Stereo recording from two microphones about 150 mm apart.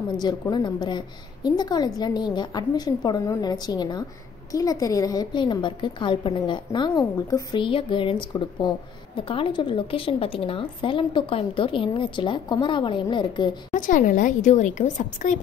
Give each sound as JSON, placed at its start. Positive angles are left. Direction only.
{"t": 0.2, "sound": "a woman's voice", "side_deg": 30}
{"t": 7.5, "sound": "a woman's voice", "side_deg": 35}
{"t": 13.7, "sound": "a woman's voice", "side_deg": 60}